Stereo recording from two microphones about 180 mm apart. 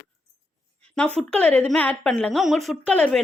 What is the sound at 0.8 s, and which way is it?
A woman's voice, 5° left (ahead or behind).